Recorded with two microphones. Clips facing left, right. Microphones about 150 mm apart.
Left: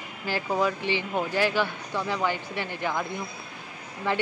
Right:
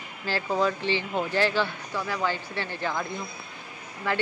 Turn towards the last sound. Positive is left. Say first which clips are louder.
# left 1 dB
turn(degrees=20)  # may be behind; listen again after turning